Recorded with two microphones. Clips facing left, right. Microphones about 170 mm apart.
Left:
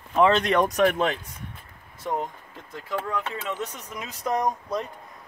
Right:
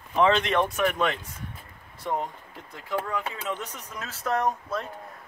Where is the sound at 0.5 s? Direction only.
40° left (ahead or behind).